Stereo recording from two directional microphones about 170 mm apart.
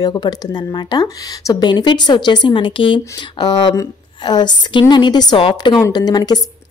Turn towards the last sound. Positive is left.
turn(degrees=25)  # may be behind; listen again after turning